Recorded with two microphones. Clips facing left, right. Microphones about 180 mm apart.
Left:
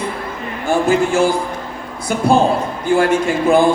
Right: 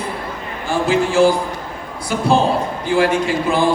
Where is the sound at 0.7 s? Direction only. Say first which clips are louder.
Left 2 dB; 45° left (ahead or behind).